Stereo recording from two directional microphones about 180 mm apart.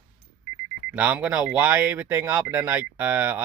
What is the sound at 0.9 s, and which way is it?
Speech, 10° right (ahead or behind).